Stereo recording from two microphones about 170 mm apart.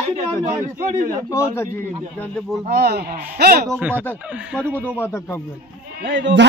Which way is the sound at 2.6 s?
65° right (ahead or behind).